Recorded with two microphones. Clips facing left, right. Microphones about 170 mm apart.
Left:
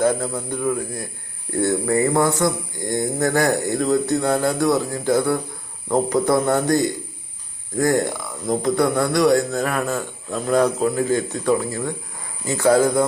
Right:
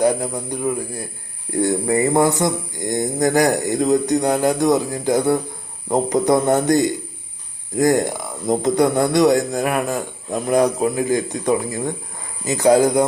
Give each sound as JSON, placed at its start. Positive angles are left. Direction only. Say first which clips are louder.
{"t": 0.0, "sound": "a man's voice", "louder": "right 2 dB", "side_deg": -15}